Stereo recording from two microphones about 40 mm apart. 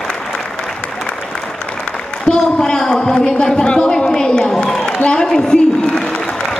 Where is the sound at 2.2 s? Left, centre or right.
Centre.